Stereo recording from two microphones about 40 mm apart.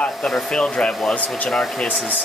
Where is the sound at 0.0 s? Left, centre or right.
Left.